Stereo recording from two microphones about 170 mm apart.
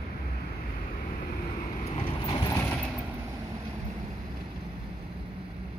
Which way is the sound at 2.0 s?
30° left (ahead or behind).